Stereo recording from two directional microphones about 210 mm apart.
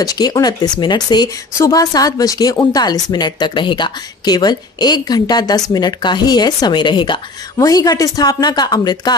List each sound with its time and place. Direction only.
0.0 s speech: 20° left (ahead or behind)